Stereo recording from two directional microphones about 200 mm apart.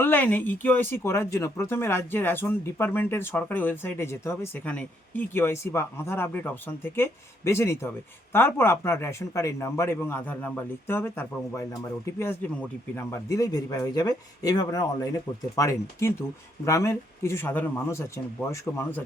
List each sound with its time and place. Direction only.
0.0 s speech: 10° left (ahead or behind)